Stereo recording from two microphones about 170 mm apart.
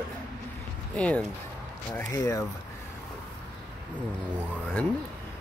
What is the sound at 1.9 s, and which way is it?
Speech, 20° left (ahead or behind).